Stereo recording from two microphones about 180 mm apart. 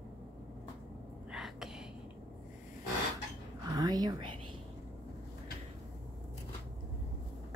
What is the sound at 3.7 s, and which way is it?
Whispering, 20° right (ahead or behind).